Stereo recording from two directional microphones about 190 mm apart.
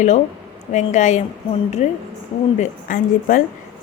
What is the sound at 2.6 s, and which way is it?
Speech, 45° left (ahead or behind).